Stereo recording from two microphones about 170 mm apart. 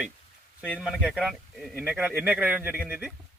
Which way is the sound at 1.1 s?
Centre (ahead or behind).